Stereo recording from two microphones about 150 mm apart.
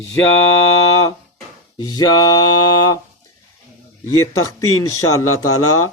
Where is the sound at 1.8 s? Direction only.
25° left (ahead or behind).